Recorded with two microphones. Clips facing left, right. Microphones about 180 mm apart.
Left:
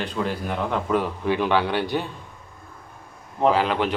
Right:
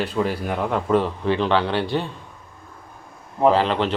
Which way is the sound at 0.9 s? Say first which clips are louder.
Right 3 dB; 10° left (ahead or behind).